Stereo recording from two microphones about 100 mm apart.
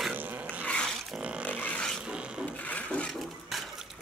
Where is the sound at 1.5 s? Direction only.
15° left (ahead or behind).